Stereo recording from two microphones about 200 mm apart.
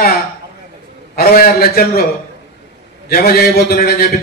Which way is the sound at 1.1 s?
50° left (ahead or behind).